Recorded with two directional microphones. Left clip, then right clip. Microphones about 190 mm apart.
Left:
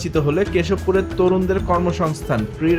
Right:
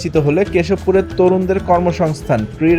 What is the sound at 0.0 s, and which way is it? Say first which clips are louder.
Speech: right 5 dB; 15° right (ahead or behind).